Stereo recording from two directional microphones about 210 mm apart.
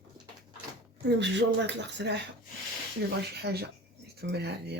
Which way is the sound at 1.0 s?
55° right (ahead or behind).